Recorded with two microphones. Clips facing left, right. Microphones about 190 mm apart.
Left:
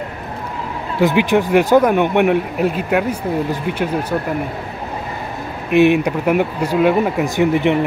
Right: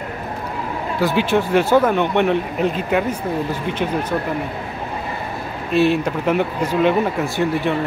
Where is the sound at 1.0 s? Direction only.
15° left (ahead or behind).